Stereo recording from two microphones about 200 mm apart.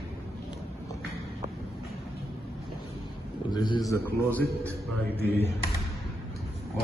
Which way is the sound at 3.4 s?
20° left (ahead or behind).